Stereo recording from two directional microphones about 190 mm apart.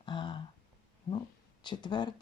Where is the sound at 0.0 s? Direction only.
25° left (ahead or behind).